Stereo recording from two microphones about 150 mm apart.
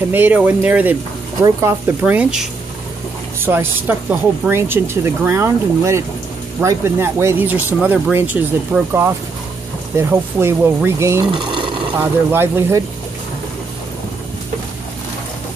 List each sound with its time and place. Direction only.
0.1 s speech: 10° right (ahead or behind)